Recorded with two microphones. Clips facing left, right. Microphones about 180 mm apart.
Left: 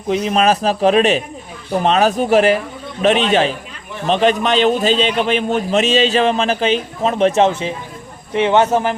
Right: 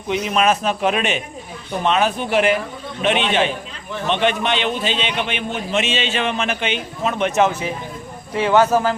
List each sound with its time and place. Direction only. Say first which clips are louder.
0.1 s a man's voice: left 3 dB; 35° left (ahead or behind); by 9.0 s 20° left (ahead or behind)